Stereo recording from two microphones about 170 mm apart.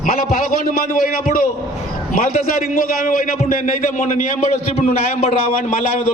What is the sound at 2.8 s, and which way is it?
A man's voice, 55° left (ahead or behind).